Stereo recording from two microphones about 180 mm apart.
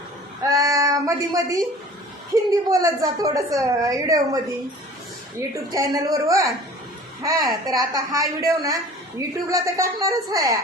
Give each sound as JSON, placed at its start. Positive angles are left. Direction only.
{"t": 0.4, "sound": "a sound", "side_deg": -20}
{"t": 2.3, "sound": "a woman's voice", "side_deg": -20}
{"t": 5.4, "sound": "a woman's voice", "side_deg": -15}